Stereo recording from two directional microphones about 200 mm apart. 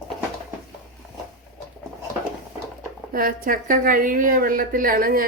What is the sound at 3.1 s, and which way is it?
A woman's voice, 45° right (ahead or behind).